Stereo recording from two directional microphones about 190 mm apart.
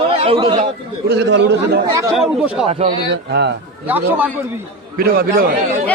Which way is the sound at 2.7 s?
35° right (ahead or behind).